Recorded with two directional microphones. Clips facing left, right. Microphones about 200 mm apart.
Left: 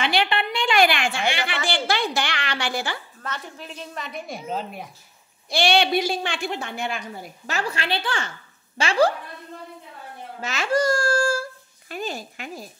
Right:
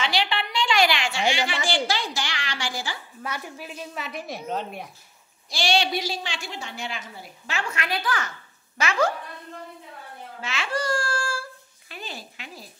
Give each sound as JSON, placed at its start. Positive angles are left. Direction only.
{"t": 0.0, "sound": "a sound", "side_deg": 55}
{"t": 3.2, "sound": "a woman's voice", "side_deg": -10}
{"t": 5.5, "sound": "a woman's voice", "side_deg": 60}
{"t": 10.4, "sound": "a child's voice", "side_deg": 40}